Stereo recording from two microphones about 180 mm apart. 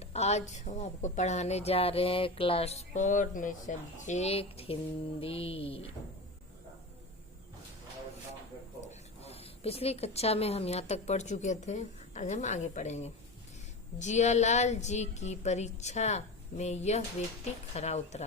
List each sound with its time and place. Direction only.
0.0 s a woman's voice: 35° left (ahead or behind)
8.8 s a woman's voice: 35° left (ahead or behind)